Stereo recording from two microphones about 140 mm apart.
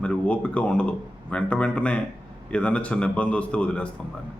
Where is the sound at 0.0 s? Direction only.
10° left (ahead or behind).